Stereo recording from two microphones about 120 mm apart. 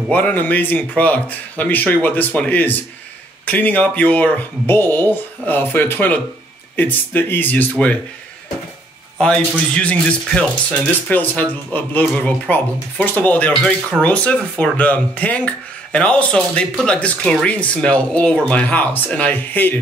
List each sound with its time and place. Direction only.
0.1 s speech: 15° left (ahead or behind)
9.2 s speech: 10° left (ahead or behind)